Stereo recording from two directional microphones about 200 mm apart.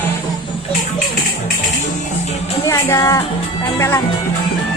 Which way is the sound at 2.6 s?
15° left (ahead or behind).